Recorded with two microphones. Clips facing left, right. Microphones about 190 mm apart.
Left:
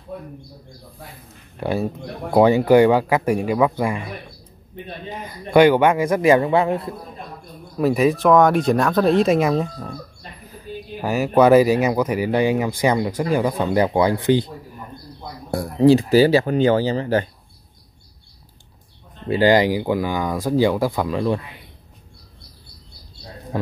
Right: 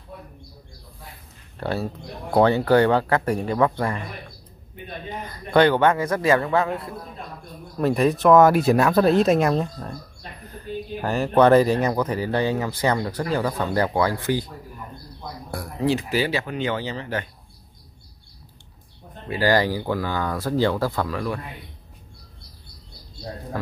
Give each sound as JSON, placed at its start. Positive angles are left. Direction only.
{"t": 1.6, "sound": "speech", "side_deg": 15}
{"t": 5.2, "sound": "speech", "side_deg": 10}
{"t": 7.7, "sound": "speech", "side_deg": 5}
{"t": 11.0, "sound": "speech", "side_deg": 5}
{"t": 15.5, "sound": "speech", "side_deg": 30}
{"t": 19.2, "sound": "speech", "side_deg": 25}
{"t": 23.5, "sound": "a man's voice", "side_deg": 20}